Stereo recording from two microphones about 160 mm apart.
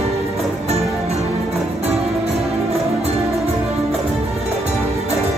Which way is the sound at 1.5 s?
40° right (ahead or behind).